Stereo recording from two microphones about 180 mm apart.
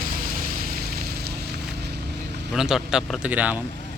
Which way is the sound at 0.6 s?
55° right (ahead or behind).